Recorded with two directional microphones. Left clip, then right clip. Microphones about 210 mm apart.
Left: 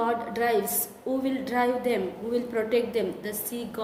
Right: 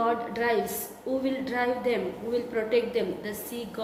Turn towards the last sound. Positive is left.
turn(degrees=40)  # may be behind; listen again after turning